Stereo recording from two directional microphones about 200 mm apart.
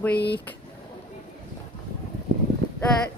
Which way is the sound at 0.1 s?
55° left (ahead or behind).